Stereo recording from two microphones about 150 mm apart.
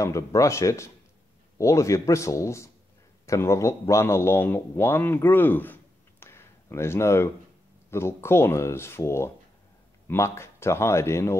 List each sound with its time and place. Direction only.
0.0 s a man's voice: 20° left (ahead or behind)